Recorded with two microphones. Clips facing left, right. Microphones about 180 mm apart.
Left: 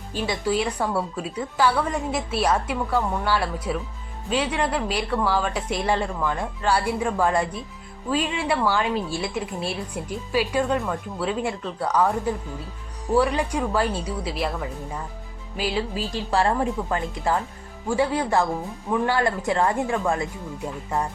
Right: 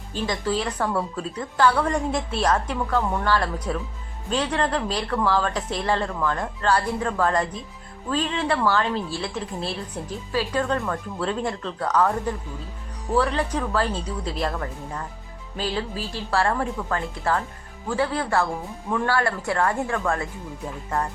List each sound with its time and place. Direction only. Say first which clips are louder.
0.1 s speech: left 1 dB; 10° left (ahead or behind)